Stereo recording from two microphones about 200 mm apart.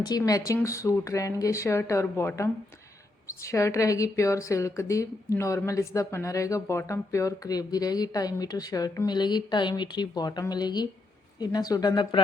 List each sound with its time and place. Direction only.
0.0 s a woman's voice: 20° left (ahead or behind)